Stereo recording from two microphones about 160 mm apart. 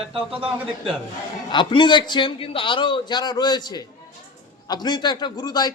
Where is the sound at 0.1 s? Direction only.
35° right (ahead or behind).